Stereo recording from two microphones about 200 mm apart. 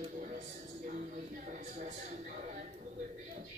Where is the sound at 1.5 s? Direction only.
40° right (ahead or behind).